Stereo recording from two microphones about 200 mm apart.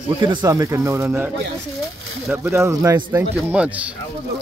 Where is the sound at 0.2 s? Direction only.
20° right (ahead or behind).